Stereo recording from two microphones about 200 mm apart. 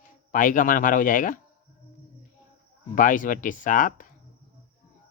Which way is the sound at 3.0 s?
40° left (ahead or behind).